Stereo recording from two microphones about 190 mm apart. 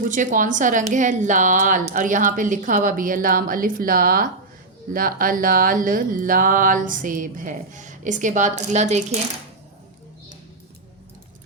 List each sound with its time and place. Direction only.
0.0 s speech: 40° right (ahead or behind)